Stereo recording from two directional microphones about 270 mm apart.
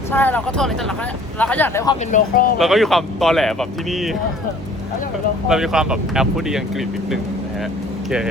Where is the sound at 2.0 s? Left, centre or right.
Left.